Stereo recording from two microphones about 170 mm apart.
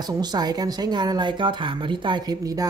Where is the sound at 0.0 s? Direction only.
25° right (ahead or behind).